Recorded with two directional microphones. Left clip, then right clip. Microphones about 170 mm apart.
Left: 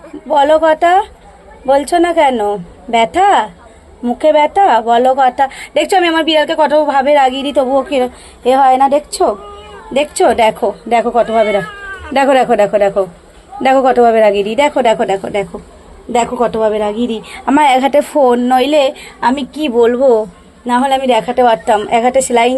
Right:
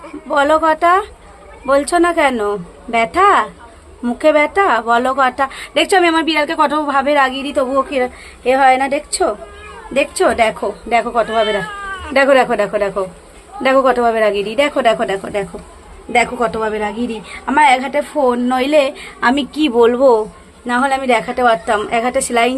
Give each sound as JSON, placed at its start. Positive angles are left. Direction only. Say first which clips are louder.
{"t": 0.3, "sound": "a woman's voice", "louder": "left 4 dB", "side_deg": 10}
{"t": 17.4, "sound": "a woman's voice", "louder": "left 2 dB", "side_deg": 40}
{"t": 18.4, "sound": "a woman's voice", "louder": "left 3 dB", "side_deg": 20}
{"t": 19.2, "sound": "a woman's voice", "louder": "even", "side_deg": 0}